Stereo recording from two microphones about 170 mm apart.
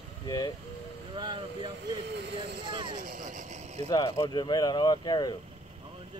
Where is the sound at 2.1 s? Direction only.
75° right (ahead or behind).